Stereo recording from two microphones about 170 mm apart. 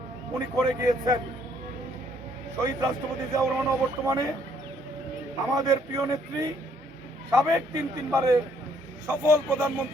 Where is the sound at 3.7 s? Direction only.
20° right (ahead or behind).